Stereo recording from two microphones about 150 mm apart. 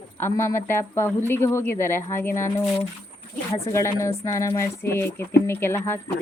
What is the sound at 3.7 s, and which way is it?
Speech, 20° left (ahead or behind).